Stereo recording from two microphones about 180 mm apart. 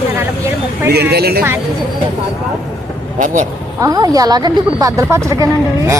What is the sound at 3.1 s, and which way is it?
Speech, 45° right (ahead or behind).